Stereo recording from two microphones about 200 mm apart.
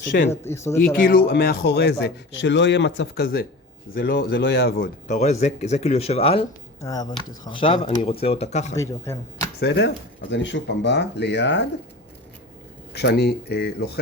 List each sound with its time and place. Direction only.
0.3 s speech: 15° left (ahead or behind)
1.3 s a man's voice: 55° left (ahead or behind)
5.0 s speech: 35° left (ahead or behind)
6.8 s speech: 20° left (ahead or behind); by 8.7 s 35° left (ahead or behind)
8.7 s speech: 15° left (ahead or behind)
9.6 s a man's voice: 55° left (ahead or behind)
12.9 s a man's voice: 55° left (ahead or behind)